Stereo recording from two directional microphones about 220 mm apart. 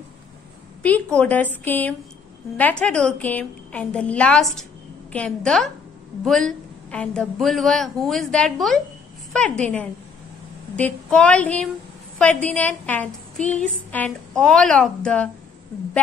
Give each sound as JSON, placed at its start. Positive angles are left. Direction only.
{"t": 0.8, "sound": "a woman's voice", "side_deg": 5}